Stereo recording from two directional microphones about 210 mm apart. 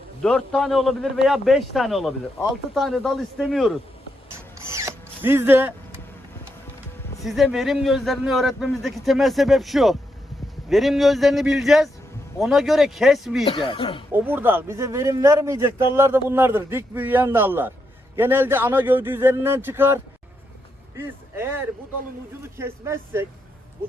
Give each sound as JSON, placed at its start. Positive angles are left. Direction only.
{"t": 0.2, "sound": "a man's voice", "side_deg": 5}
{"t": 4.7, "sound": "drill", "side_deg": -10}
{"t": 7.3, "sound": "a man's voice", "side_deg": 0}
{"t": 13.4, "sound": "speech", "side_deg": 25}
{"t": 14.1, "sound": "a man's voice", "side_deg": -10}